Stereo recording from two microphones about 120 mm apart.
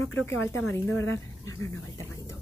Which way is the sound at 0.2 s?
15° left (ahead or behind).